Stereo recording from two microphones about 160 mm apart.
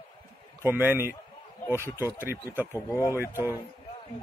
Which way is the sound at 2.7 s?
15° left (ahead or behind).